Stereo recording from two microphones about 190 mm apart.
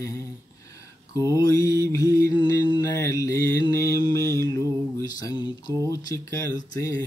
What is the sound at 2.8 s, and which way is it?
Mantra, 15° left (ahead or behind).